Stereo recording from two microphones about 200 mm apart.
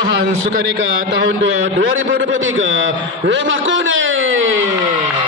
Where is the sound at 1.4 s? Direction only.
65° right (ahead or behind).